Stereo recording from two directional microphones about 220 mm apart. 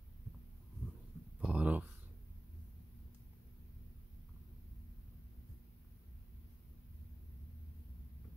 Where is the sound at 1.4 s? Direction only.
5° right (ahead or behind).